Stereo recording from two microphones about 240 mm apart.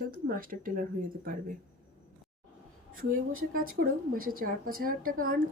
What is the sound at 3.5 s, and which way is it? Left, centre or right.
Speech, right.